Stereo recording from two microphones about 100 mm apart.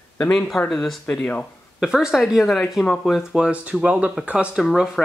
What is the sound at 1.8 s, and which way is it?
Speech, 5° right (ahead or behind).